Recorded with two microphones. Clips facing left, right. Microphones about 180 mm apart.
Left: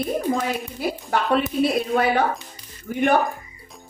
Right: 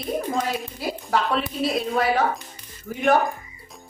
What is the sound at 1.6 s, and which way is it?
Speech, 60° left (ahead or behind).